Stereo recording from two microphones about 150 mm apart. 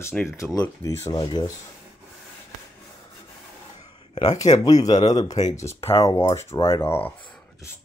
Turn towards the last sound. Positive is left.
turn(degrees=15)  # may be behind; listen again after turning